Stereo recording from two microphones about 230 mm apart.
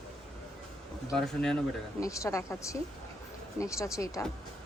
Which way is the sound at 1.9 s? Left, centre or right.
Centre.